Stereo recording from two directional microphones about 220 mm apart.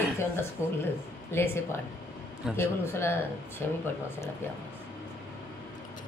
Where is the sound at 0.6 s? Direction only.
10° left (ahead or behind).